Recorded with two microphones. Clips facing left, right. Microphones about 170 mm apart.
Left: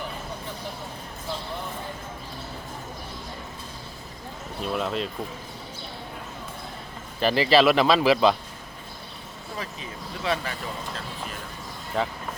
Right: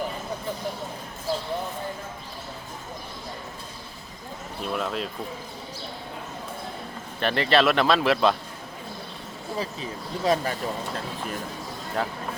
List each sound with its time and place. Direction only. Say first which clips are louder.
4.6 s speech: left 1 dB; centre (ahead or behind)
7.2 s speech: left 2 dB; 5° left (ahead or behind)
10.2 s speech: right 5 dB; 40° right (ahead or behind)
12.0 s speech: left 1 dB; centre (ahead or behind)